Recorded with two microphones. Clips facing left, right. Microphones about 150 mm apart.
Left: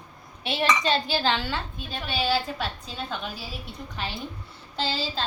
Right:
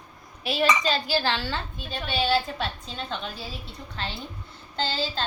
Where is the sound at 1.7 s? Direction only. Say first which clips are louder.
Right 1 dB; centre (ahead or behind).